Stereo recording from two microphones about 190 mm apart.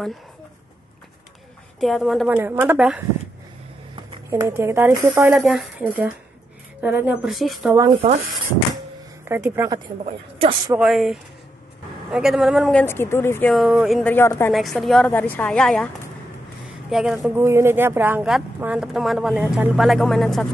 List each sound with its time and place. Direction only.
1.8 s speech: centre (ahead or behind)
3.9 s speech: 20° right (ahead or behind)
5.3 s speech: centre (ahead or behind)
7.9 s speech: 30° right (ahead or behind)
9.2 s speech: 15° right (ahead or behind)
10.7 s speech: centre (ahead or behind)
12.8 s speech: 10° left (ahead or behind)
14.1 s speech: 15° left (ahead or behind)
14.5 s speech: centre (ahead or behind)
16.9 s speech: centre (ahead or behind)
17.4 s speech: 15° right (ahead or behind)